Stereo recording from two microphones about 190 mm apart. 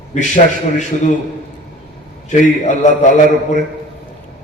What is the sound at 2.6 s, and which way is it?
Speech, 40° left (ahead or behind).